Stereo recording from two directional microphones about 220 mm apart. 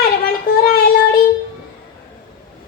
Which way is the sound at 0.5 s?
40° left (ahead or behind).